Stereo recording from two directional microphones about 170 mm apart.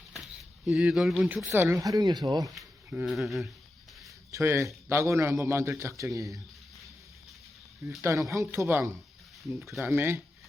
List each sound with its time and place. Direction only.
0.7 s speech: 5° right (ahead or behind)
1.5 s speech: 15° right (ahead or behind)
2.6 s speech: 5° right (ahead or behind)
4.3 s a man's voice: 15° right (ahead or behind)
8.0 s a man's voice: 20° right (ahead or behind)
9.6 s speech: centre (ahead or behind)
9.8 s a man's voice: 10° right (ahead or behind)